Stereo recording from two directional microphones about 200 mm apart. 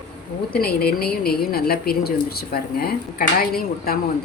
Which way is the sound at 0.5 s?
50° left (ahead or behind).